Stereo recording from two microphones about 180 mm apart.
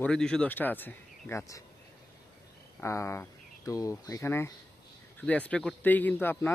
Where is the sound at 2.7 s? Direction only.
15° left (ahead or behind).